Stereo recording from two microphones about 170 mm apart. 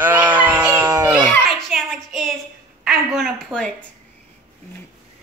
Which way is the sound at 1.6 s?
Centre (ahead or behind).